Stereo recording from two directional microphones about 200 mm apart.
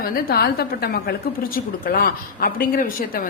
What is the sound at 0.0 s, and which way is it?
A woman's voice, 50° left (ahead or behind).